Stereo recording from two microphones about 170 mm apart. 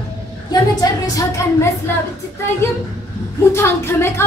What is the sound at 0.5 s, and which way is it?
A woman's voice, 20° left (ahead or behind).